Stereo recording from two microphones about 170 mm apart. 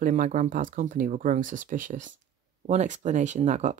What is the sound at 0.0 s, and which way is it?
Speech, 50° right (ahead or behind).